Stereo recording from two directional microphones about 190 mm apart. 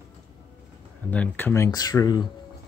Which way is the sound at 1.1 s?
10° left (ahead or behind).